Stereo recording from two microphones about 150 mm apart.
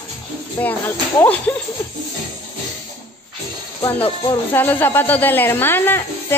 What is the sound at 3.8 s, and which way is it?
Speech, 30° left (ahead or behind).